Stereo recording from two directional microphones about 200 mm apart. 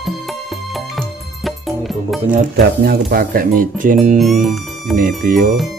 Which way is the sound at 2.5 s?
50° right (ahead or behind).